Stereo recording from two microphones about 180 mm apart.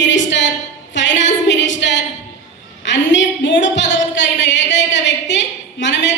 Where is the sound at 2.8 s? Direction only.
90° left.